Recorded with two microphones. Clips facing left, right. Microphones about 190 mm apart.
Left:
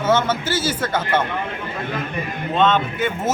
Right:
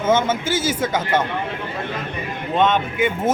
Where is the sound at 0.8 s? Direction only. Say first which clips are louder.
Right 1 dB; 15° right (ahead or behind).